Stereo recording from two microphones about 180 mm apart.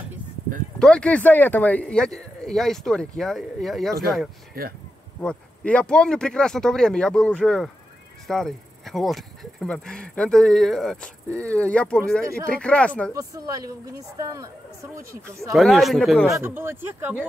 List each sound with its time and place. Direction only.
0.7 s speech: 5° left (ahead or behind)
13.1 s speech: 20° right (ahead or behind)
15.5 s speech: centre (ahead or behind)
16.3 s speech: 15° right (ahead or behind)